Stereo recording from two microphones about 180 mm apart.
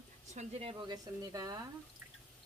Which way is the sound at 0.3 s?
35° right (ahead or behind).